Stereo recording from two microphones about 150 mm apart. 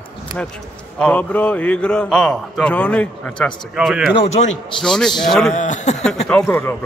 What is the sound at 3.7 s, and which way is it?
A man's voice, 5° right (ahead or behind).